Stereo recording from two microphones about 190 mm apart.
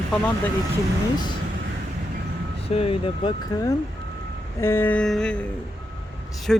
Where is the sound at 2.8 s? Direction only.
30° left (ahead or behind).